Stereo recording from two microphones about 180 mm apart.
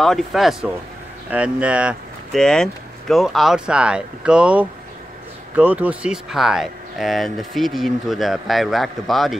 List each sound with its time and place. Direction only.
0.0 s speech: centre (ahead or behind)